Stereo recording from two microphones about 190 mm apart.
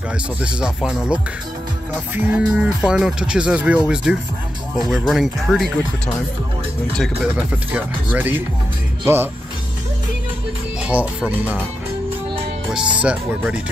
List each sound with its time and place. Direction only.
0.6 s speech: 5° right (ahead or behind)
7.0 s speech: 5° right (ahead or behind)
10.8 s speech: 5° right (ahead or behind)
13.0 s speech: 5° right (ahead or behind)